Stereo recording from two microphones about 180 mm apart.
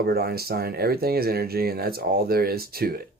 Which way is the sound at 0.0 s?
60° right (ahead or behind).